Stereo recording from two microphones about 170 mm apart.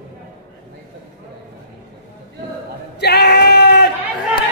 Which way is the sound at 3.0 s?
75° left (ahead or behind).